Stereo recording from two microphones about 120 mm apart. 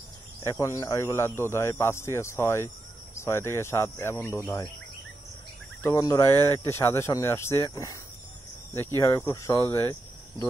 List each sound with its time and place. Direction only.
0.4 s speech: 25° left (ahead or behind)
5.8 s speech: 25° left (ahead or behind)